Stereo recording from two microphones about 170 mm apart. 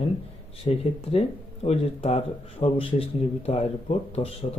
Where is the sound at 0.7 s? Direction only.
35° left (ahead or behind).